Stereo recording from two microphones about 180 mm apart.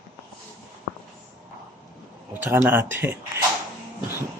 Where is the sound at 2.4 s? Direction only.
15° right (ahead or behind).